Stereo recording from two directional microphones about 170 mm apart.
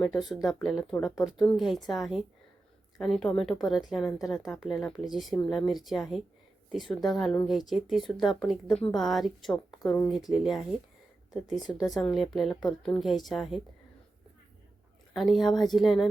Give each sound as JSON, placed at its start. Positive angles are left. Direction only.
{"t": 0.0, "sound": "a woman's voice", "side_deg": 0}
{"t": 15.1, "sound": "a woman's voice", "side_deg": 0}